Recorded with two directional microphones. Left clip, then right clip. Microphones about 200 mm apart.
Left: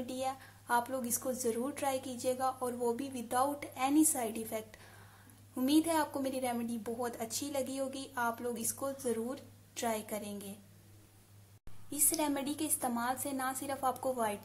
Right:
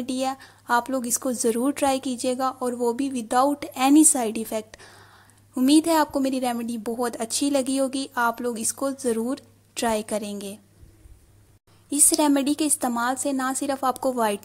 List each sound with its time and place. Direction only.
0.0 s a woman's voice: 40° right (ahead or behind)
11.9 s a woman's voice: 40° right (ahead or behind)